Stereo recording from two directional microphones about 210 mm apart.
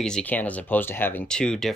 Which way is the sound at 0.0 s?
5° left (ahead or behind).